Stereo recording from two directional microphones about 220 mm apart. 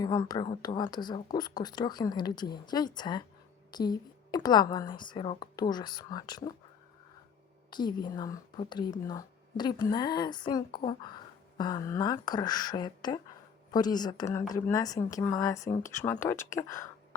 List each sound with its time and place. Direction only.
0.0 s speech: 15° left (ahead or behind)
7.7 s speech: 20° left (ahead or behind)